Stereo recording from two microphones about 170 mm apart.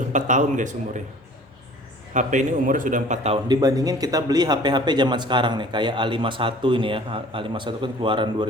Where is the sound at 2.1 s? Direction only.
45° right (ahead or behind).